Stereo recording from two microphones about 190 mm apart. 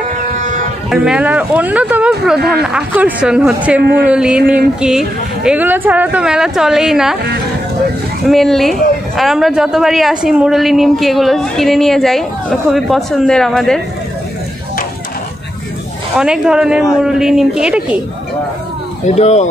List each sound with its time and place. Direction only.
0.8 s a woman's voice: 5° right (ahead or behind)
8.3 s a woman's voice: centre (ahead or behind)
16.2 s a woman's voice: 5° right (ahead or behind)
19.0 s speech: 35° left (ahead or behind)